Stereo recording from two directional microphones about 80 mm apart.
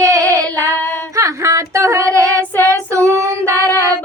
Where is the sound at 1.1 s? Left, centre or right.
Right.